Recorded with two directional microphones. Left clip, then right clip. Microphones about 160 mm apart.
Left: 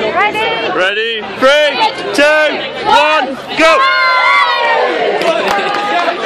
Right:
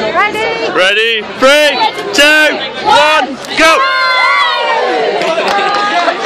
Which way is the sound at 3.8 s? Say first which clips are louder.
Even; 60° right (ahead or behind).